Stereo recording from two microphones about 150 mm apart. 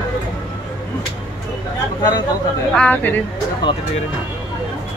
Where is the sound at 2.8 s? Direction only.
10° left (ahead or behind).